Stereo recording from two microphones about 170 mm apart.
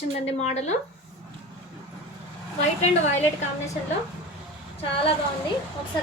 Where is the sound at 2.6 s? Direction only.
40° left (ahead or behind).